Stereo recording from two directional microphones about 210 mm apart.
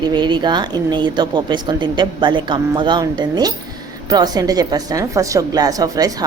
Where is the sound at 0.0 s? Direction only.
20° right (ahead or behind).